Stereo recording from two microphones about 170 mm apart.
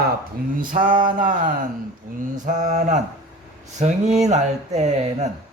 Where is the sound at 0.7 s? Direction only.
55° right (ahead or behind).